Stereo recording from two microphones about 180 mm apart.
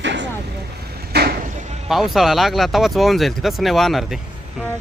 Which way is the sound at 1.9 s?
Centre (ahead or behind).